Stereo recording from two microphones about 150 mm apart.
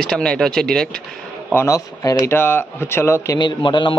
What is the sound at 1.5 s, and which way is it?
A man's voice, 20° left (ahead or behind).